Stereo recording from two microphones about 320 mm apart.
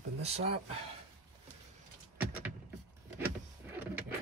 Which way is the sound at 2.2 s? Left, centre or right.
Centre.